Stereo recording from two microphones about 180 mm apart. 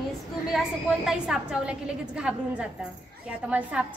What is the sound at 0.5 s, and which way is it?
A woman's voice, centre (ahead or behind).